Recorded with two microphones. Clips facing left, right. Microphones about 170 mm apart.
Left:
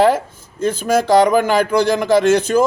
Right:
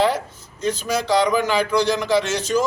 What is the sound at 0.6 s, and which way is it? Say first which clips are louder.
Speech: left 6 dB; 50° left (ahead or behind).